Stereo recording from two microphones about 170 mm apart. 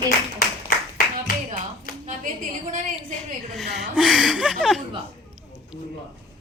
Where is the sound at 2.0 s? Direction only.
50° right (ahead or behind).